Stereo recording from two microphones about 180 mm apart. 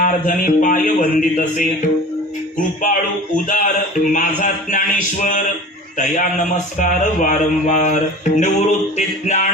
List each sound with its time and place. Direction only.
0.0 s speech: 50° left (ahead or behind)
2.8 s speech: 50° left (ahead or behind)
8.4 s music: 40° left (ahead or behind)